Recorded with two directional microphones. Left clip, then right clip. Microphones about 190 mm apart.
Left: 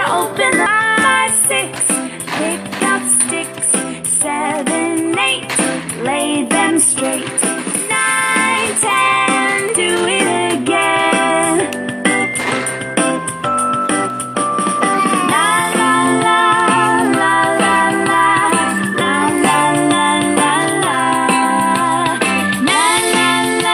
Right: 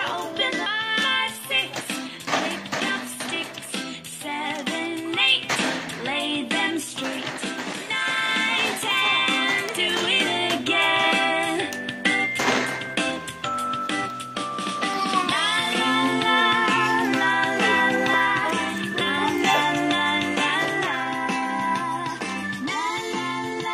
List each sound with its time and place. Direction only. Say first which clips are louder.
0.0 s music: left 11 dB; 45° left (ahead or behind)
4.3 s music: left 10 dB; 45° left (ahead or behind)
9.4 s music: left 8 dB; 35° left (ahead or behind)